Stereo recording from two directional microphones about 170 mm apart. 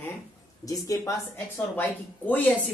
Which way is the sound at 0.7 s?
20° left (ahead or behind).